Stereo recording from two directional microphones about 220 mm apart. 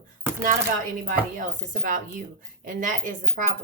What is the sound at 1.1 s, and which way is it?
Speech, 40° right (ahead or behind).